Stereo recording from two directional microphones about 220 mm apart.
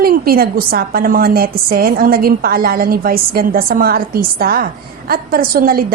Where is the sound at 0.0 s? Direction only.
45° right (ahead or behind).